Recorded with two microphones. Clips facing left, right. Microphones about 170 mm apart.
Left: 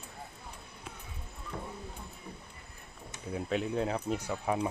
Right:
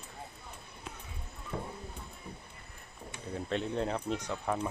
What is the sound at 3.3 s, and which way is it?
Speech, 5° left (ahead or behind).